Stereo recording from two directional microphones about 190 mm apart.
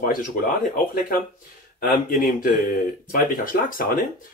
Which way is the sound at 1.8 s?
45° left (ahead or behind).